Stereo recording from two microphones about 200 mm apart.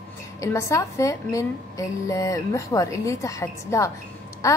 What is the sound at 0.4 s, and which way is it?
A woman's voice, 15° left (ahead or behind).